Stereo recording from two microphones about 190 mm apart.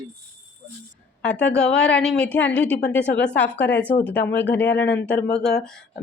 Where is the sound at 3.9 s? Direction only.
10° left (ahead or behind).